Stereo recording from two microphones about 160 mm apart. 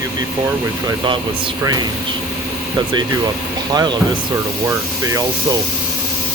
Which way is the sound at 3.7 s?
25° right (ahead or behind).